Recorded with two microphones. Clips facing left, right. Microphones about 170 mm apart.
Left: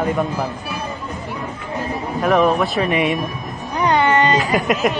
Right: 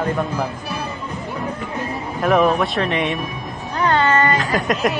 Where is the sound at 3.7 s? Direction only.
15° left (ahead or behind).